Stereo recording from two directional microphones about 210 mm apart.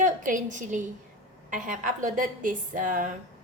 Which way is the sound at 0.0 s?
40° right (ahead or behind).